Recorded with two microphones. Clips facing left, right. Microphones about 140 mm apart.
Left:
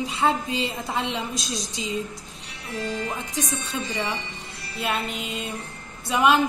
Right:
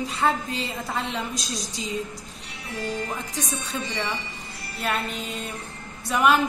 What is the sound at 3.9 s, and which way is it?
Speech, 20° left (ahead or behind).